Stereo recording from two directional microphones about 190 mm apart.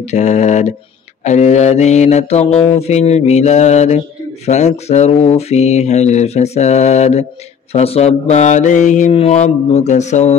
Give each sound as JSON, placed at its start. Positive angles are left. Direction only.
{"t": 0.0, "sound": "mantra", "side_deg": 35}